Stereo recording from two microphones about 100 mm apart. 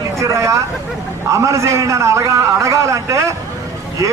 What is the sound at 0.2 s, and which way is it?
A man's voice, 30° right (ahead or behind).